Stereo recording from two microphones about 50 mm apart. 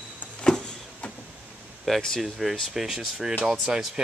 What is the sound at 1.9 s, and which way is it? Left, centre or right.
Speech, centre.